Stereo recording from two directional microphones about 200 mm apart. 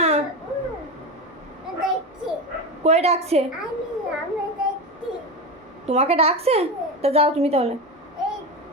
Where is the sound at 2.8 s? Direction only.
30° right (ahead or behind).